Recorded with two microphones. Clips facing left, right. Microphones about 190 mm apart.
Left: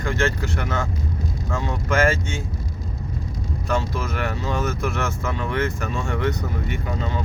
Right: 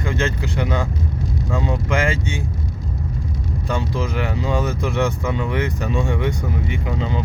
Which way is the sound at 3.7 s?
15° right (ahead or behind).